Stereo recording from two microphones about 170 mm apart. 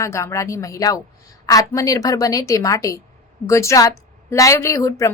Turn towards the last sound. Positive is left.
turn(degrees=20)  # may be behind; listen again after turning